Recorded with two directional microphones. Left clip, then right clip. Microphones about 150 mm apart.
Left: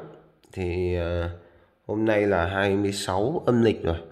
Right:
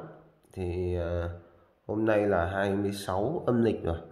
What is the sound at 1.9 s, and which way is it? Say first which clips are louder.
Speech: left 3 dB; 10° left (ahead or behind).